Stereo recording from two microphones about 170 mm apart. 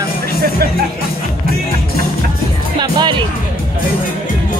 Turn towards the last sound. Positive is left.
turn(degrees=-25)  # may be behind; listen again after turning